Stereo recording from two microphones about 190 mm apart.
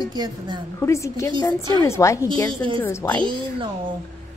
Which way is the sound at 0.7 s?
15° left (ahead or behind).